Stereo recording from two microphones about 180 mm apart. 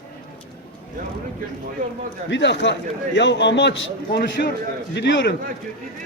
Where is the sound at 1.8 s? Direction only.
45° right (ahead or behind).